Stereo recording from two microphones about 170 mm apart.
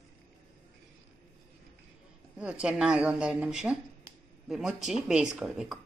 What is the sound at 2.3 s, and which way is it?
Speech, 5° right (ahead or behind).